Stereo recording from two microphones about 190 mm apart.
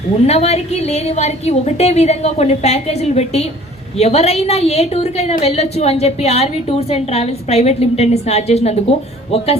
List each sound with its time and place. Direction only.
0.3 s a woman's voice: 35° left (ahead or behind)